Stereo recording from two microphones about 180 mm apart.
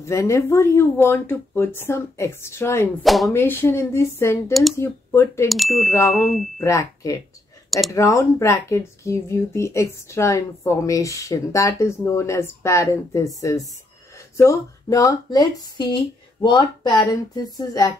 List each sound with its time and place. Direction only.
0.0 s speech: 15° left (ahead or behind)
3.0 s speech: centre (ahead or behind)
3.3 s speech: 15° left (ahead or behind)
5.5 s speech: centre (ahead or behind)
6.6 s speech: 20° left (ahead or behind)
14.3 s speech: 15° left (ahead or behind)